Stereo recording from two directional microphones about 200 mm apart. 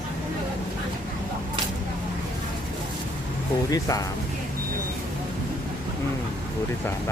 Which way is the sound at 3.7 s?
15° left (ahead or behind).